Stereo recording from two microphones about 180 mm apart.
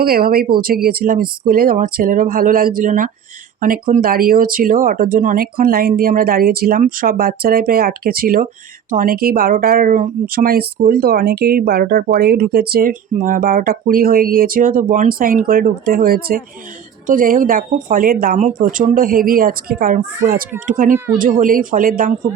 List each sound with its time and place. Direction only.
0.0 s speech: 55° right (ahead or behind)